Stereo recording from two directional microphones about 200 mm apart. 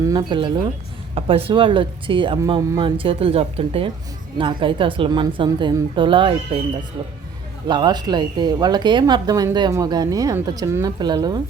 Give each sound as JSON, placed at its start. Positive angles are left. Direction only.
{"t": 0.0, "sound": "speech", "side_deg": -20}
{"t": 7.7, "sound": "speech", "side_deg": -20}